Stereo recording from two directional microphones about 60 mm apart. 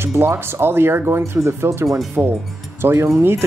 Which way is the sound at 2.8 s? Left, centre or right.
Right.